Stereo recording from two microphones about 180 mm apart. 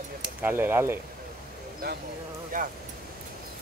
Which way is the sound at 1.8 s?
60° right (ahead or behind).